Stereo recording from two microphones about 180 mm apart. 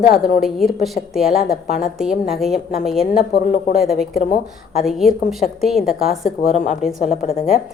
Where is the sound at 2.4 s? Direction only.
Centre (ahead or behind).